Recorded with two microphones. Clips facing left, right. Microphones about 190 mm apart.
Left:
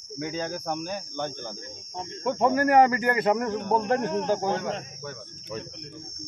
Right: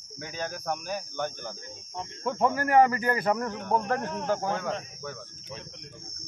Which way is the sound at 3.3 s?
20° left (ahead or behind).